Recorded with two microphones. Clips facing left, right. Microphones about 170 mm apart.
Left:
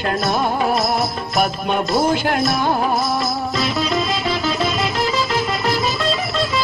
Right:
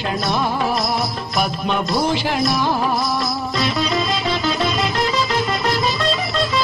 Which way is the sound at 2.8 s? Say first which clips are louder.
Left 1 dB; centre (ahead or behind).